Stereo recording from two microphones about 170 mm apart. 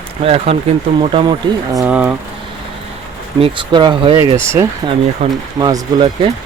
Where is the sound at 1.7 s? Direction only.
10° right (ahead or behind).